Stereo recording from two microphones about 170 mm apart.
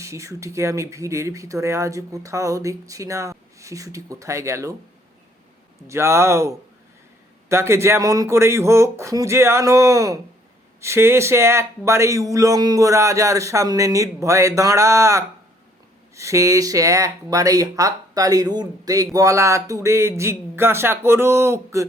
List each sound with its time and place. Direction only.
0.0 s speech: 15° right (ahead or behind)
5.9 s speech: 15° right (ahead or behind)